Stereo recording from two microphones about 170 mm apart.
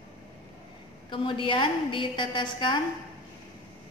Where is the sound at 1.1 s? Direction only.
30° left (ahead or behind).